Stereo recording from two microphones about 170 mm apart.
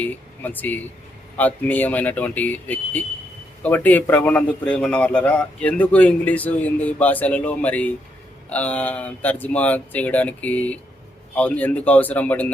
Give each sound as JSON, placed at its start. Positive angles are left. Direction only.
{"t": 0.0, "sound": "a man's voice", "side_deg": 10}